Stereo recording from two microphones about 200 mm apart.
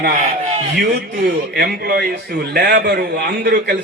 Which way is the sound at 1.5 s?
55° right (ahead or behind).